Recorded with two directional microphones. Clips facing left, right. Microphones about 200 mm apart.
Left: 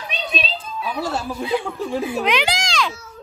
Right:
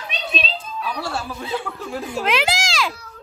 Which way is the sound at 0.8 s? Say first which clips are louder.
Left 3 dB; 20° left (ahead or behind).